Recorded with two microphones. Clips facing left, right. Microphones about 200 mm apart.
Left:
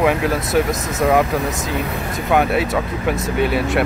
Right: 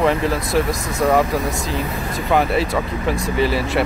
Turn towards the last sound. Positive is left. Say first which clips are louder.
# left 1 dB
turn(degrees=0)  # may be behind; listen again after turning